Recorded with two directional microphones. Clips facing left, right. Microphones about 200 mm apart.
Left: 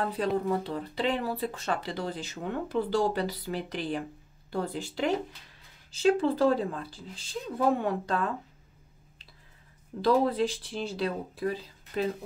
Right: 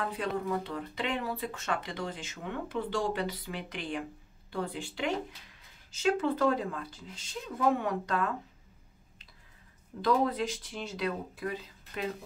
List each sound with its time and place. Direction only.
0.5 s speech: 35° left (ahead or behind)
10.0 s speech: 30° left (ahead or behind)